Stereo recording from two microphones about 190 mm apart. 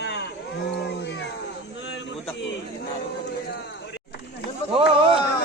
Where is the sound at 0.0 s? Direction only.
65° left (ahead or behind).